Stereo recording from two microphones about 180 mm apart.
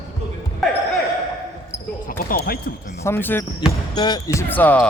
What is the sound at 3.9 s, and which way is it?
Speech, 25° left (ahead or behind).